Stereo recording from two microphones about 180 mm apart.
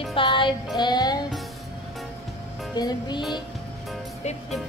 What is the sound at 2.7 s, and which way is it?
Music, 25° left (ahead or behind).